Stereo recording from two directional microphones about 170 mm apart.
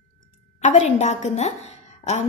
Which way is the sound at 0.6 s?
45° left (ahead or behind).